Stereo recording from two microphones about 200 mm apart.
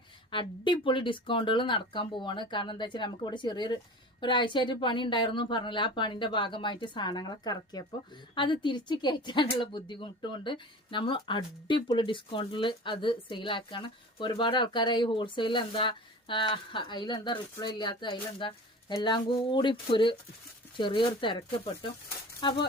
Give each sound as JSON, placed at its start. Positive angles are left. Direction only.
{"t": 0.3, "sound": "speech", "side_deg": 25}